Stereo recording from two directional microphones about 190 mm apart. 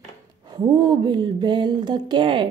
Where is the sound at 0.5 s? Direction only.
20° right (ahead or behind).